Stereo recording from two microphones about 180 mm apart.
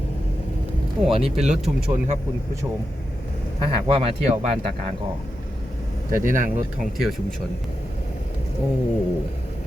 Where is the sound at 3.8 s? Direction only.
30° right (ahead or behind).